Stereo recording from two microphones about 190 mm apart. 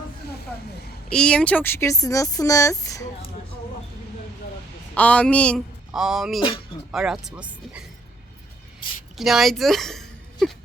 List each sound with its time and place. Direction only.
1.1 s speech: 5° left (ahead or behind)
4.9 s speech: 5° left (ahead or behind)
9.1 s speech: centre (ahead or behind)